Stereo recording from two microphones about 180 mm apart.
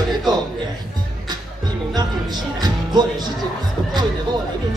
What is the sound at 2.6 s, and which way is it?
Music, 25° right (ahead or behind).